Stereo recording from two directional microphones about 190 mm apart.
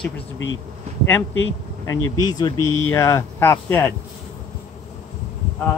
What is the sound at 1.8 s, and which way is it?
Speech, 20° left (ahead or behind).